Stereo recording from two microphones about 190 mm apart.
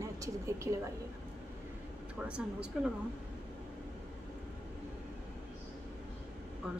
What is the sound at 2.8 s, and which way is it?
Speech, 5° right (ahead or behind).